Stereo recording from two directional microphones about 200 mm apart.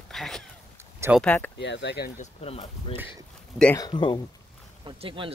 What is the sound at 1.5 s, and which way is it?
Speech, 60° left (ahead or behind).